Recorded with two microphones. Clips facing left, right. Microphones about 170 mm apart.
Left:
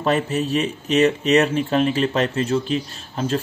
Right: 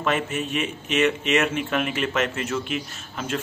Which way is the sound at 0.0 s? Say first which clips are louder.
Left 5 dB; 35° left (ahead or behind).